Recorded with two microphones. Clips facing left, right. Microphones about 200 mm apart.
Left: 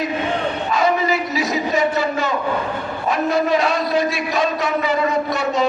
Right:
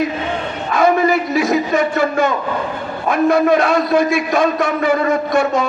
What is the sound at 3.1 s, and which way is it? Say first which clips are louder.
A man's voice: right 5 dB; 55° right (ahead or behind).